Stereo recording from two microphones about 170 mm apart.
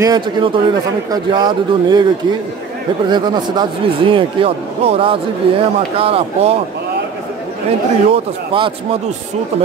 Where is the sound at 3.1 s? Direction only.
25° right (ahead or behind).